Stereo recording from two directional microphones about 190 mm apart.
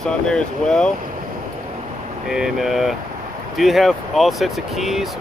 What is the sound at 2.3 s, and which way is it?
Speech, centre (ahead or behind).